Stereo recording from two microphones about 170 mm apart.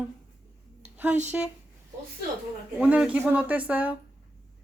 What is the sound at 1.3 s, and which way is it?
Speech, 10° right (ahead or behind).